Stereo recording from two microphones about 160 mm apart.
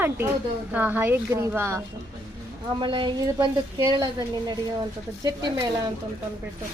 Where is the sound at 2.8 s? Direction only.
30° right (ahead or behind).